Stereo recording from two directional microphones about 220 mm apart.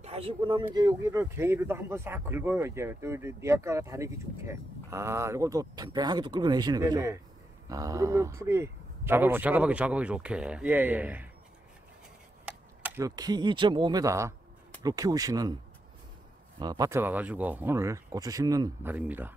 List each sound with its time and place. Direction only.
0.0 s speech: 25° right (ahead or behind); by 11.2 s 5° right (ahead or behind)
12.4 s speech: 10° right (ahead or behind)
16.5 s speech: 15° right (ahead or behind)